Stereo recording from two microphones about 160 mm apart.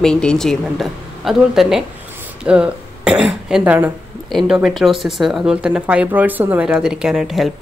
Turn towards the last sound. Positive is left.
turn(degrees=0)  # may be behind; listen again after turning